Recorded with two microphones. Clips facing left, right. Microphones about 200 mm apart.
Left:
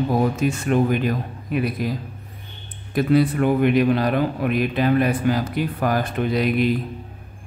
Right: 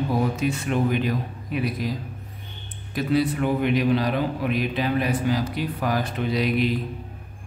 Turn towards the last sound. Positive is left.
turn(degrees=55)  # may be behind; listen again after turning